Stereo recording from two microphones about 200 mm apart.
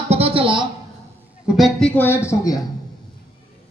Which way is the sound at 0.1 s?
30° right (ahead or behind).